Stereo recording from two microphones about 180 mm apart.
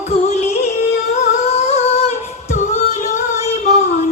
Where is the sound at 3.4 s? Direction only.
40° left (ahead or behind).